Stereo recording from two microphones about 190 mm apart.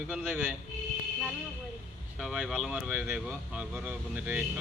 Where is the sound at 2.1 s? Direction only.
Centre (ahead or behind).